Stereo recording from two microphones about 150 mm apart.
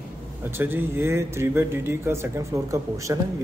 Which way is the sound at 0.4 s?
15° right (ahead or behind).